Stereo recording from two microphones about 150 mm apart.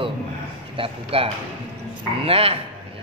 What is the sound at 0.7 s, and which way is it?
Speech, 35° right (ahead or behind).